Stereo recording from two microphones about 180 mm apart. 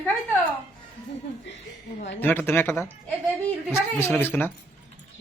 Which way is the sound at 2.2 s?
10° left (ahead or behind).